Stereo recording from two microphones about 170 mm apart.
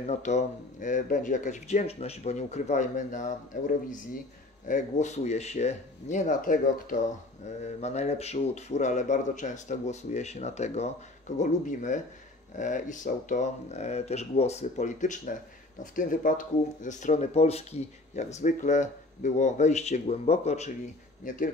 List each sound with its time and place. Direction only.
0.0 s speech: 45° left (ahead or behind)
7.4 s speech: 40° left (ahead or behind)